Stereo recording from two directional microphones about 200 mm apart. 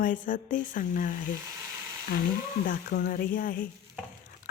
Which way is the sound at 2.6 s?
45° left (ahead or behind).